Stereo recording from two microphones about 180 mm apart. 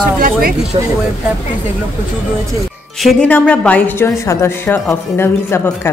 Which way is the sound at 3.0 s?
5° left (ahead or behind).